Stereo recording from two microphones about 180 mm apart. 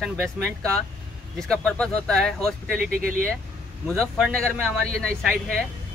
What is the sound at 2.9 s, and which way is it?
Speech, 55° right (ahead or behind).